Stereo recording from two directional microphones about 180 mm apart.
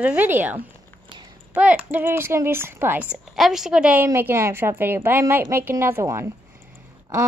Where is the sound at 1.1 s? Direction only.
20° right (ahead or behind).